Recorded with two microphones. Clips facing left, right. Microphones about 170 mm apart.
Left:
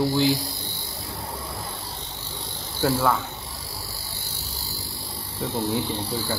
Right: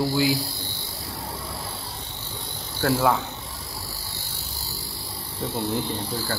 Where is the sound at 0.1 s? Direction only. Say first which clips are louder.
Left 1 dB; 5° right (ahead or behind).